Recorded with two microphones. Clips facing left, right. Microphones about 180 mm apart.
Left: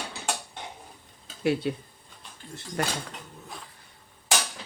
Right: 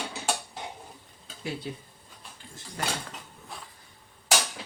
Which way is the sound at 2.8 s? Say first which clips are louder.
Left 3 dB; 65° left (ahead or behind).